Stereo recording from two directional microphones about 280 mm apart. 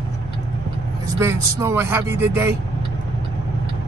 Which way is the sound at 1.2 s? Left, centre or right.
Centre.